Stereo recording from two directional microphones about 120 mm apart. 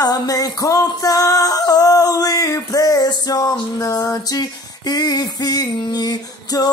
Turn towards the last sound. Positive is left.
turn(degrees=35)  # may be behind; listen again after turning